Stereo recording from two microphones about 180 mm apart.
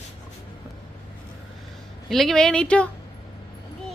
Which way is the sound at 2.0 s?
Centre (ahead or behind).